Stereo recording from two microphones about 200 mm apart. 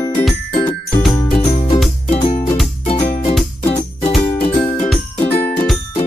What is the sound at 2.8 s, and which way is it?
Music, 30° left (ahead or behind).